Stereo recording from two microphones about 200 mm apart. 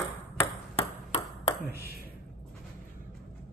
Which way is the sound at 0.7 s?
30° left (ahead or behind).